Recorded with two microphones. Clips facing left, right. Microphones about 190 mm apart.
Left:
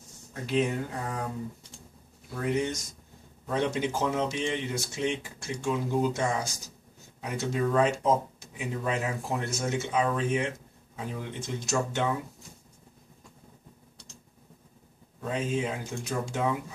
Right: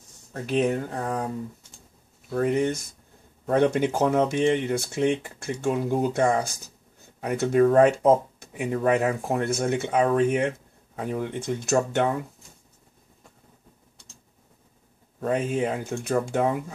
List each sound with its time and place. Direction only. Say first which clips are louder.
0.3 s speech: right 4 dB; 60° right (ahead or behind)
2.3 s speech: right 6 dB; 55° right (ahead or behind)
15.1 s speech: right 5 dB; 55° right (ahead or behind)